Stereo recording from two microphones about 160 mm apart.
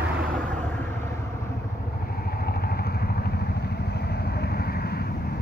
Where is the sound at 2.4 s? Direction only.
75° left (ahead or behind).